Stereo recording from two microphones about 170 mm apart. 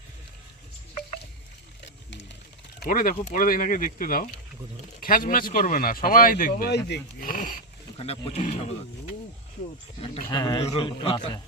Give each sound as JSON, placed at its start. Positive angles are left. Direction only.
{"t": 1.8, "sound": "a sound", "side_deg": 90}
{"t": 2.8, "sound": "speech", "side_deg": 55}
{"t": 7.9, "sound": "a man's voice", "side_deg": 35}
{"t": 10.2, "sound": "a man's voice", "side_deg": 25}